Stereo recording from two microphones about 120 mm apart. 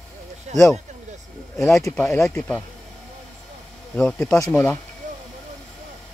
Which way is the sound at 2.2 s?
5° left (ahead or behind).